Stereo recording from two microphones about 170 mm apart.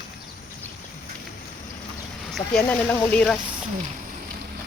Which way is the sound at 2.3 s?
5° left (ahead or behind).